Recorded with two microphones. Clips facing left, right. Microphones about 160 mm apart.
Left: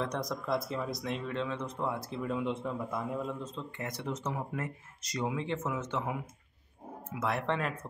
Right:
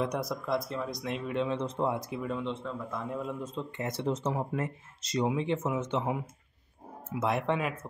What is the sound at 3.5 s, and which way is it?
Speech, 25° right (ahead or behind).